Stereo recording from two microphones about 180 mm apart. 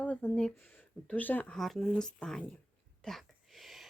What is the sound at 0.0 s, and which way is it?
Speech, 5° left (ahead or behind).